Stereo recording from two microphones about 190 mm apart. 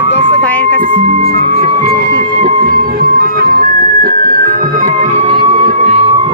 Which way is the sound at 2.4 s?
45° right (ahead or behind).